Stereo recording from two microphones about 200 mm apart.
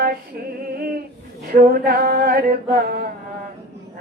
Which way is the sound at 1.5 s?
50° right (ahead or behind).